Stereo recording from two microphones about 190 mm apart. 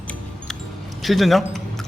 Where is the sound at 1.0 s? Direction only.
Centre (ahead or behind).